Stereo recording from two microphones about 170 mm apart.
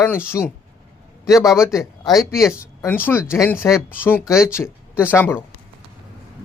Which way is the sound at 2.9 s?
10° left (ahead or behind).